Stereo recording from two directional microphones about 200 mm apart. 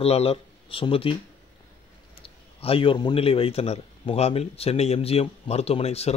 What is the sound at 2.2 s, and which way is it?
A man's voice, 25° left (ahead or behind).